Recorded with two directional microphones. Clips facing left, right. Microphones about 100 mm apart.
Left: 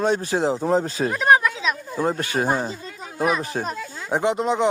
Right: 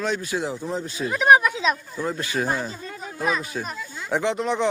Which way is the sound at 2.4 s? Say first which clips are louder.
Left 5 dB; 20° left (ahead or behind).